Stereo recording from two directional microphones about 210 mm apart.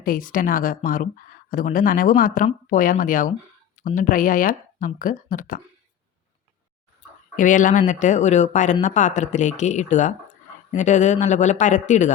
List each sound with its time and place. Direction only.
0.0 s speech: 40° left (ahead or behind)
7.3 s speech: 40° left (ahead or behind)